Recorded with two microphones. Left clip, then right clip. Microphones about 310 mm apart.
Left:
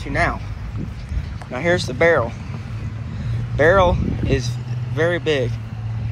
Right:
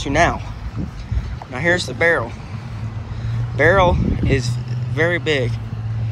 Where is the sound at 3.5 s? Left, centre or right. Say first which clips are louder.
Even; centre.